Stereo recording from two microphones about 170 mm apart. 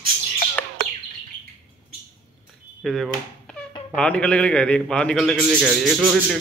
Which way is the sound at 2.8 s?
Centre (ahead or behind).